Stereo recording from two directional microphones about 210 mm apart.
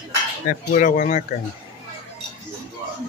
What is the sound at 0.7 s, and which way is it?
Speech, 35° left (ahead or behind).